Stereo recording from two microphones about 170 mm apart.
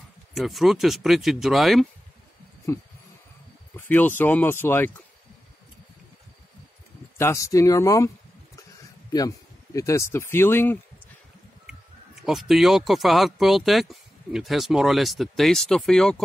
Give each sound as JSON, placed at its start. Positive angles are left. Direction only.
{"t": 0.3, "sound": "speech", "side_deg": 0}
{"t": 2.7, "sound": "speech", "side_deg": 15}
{"t": 7.2, "sound": "speech", "side_deg": 15}
{"t": 9.8, "sound": "speech", "side_deg": 20}
{"t": 12.2, "sound": "speech", "side_deg": 0}